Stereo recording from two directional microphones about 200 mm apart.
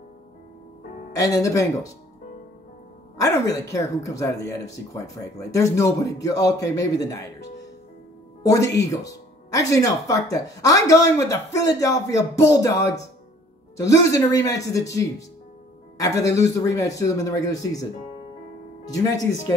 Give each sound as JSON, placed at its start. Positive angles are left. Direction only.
{"t": 1.1, "sound": "speech", "side_deg": 15}
{"t": 3.2, "sound": "speech", "side_deg": 15}
{"t": 16.3, "sound": "speech", "side_deg": 15}
{"t": 18.9, "sound": "speech", "side_deg": 15}